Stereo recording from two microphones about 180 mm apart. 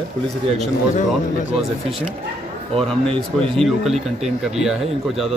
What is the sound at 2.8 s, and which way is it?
A man's voice, 5° left (ahead or behind).